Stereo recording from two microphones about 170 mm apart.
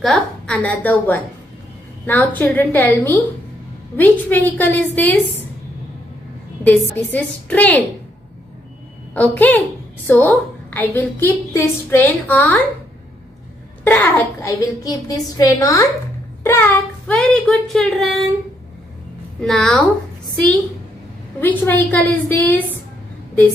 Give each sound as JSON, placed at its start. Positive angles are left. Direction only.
{"t": 0.0, "sound": "a woman's voice", "side_deg": 5}
{"t": 7.1, "sound": "a woman's voice", "side_deg": 10}
{"t": 9.1, "sound": "a woman's voice", "side_deg": 10}
{"t": 13.8, "sound": "a woman's voice", "side_deg": 10}
{"t": 19.4, "sound": "a woman's voice", "side_deg": 5}
{"t": 21.4, "sound": "a woman's voice", "side_deg": 10}